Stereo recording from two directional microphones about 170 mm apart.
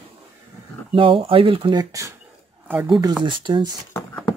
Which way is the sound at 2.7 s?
5° right (ahead or behind).